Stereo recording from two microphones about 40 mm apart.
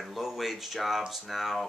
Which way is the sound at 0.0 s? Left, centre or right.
Centre.